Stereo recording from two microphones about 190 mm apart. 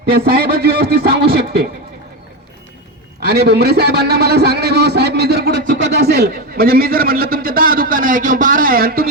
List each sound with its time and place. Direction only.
0.0 s a man's voice: 55° right (ahead or behind)
3.2 s a man's voice: 60° right (ahead or behind)